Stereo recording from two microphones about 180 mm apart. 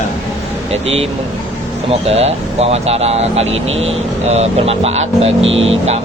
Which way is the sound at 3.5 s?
90° right.